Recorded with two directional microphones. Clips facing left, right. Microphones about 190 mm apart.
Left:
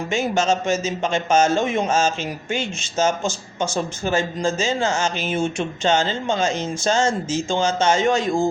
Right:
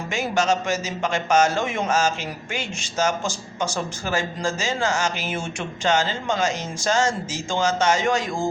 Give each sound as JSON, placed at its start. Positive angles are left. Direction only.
{"t": 0.1, "sound": "a man's voice", "side_deg": 25}